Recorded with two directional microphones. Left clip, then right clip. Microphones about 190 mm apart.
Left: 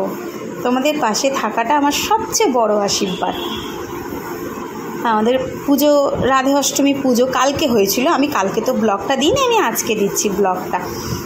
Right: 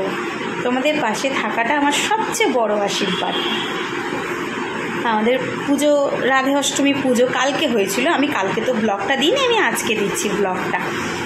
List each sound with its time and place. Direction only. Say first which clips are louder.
0.7 s a woman's voice: left 3 dB; 35° left (ahead or behind)
5.0 s a woman's voice: left 3 dB; 35° left (ahead or behind)